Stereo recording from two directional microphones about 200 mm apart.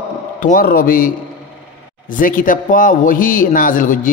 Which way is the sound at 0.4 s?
45° left (ahead or behind).